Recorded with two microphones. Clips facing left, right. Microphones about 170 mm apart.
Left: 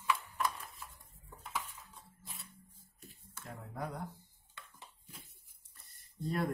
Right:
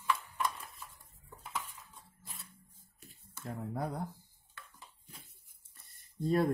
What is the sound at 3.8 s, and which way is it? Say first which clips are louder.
Speech: right 3 dB; 35° right (ahead or behind).